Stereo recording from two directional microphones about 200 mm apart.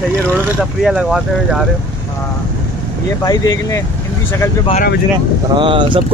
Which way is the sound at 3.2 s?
20° left (ahead or behind).